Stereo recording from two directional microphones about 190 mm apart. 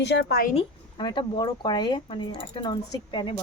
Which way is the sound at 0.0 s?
60° left (ahead or behind).